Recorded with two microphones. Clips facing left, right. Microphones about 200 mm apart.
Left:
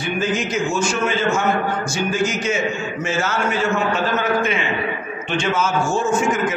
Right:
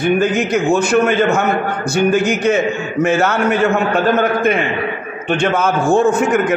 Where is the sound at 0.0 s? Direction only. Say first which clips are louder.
Right 7 dB; 60° right (ahead or behind).